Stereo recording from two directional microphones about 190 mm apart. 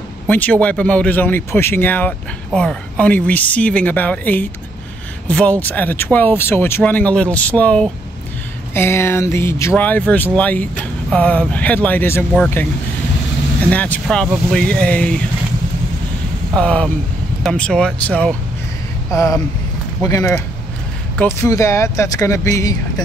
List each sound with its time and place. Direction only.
0.3 s speech: 10° left (ahead or behind)
13.7 s speech: 10° left (ahead or behind)
16.5 s speech: 5° left (ahead or behind)